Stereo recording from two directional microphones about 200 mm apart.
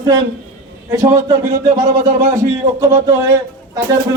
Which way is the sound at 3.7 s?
20° right (ahead or behind).